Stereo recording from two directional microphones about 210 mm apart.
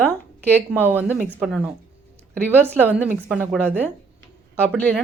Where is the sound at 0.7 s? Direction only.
10° right (ahead or behind).